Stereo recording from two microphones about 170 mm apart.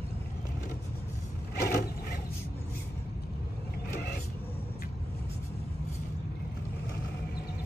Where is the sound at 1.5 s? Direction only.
65° left (ahead or behind).